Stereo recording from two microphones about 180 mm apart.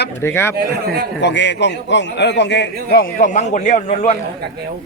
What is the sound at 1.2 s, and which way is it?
A man's voice, 75° left (ahead or behind).